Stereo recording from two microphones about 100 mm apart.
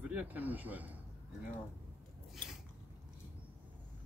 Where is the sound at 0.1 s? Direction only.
15° right (ahead or behind).